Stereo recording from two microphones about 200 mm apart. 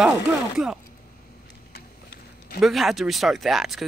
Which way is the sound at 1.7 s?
50° left (ahead or behind).